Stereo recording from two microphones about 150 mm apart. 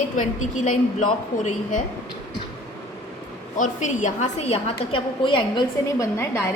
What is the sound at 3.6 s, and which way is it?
A woman's voice, 55° left (ahead or behind).